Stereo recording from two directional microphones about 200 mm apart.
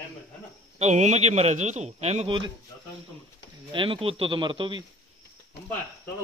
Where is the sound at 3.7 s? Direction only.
25° right (ahead or behind).